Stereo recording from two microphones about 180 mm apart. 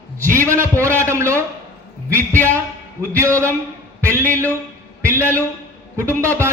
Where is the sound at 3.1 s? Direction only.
15° right (ahead or behind).